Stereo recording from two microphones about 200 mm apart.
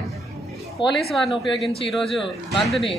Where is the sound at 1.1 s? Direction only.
Centre (ahead or behind).